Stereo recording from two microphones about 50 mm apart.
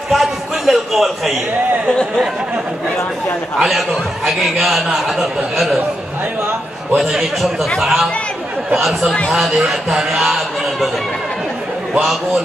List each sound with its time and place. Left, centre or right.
0.1 s a sound: centre
1.9 s speech: centre
3.5 s a man's voice: centre
7.0 s a man's voice: centre